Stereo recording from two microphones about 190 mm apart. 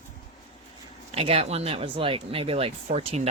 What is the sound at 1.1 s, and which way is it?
Speech, 30° right (ahead or behind).